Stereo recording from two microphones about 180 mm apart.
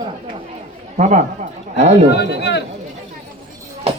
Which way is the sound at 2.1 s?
70° left (ahead or behind).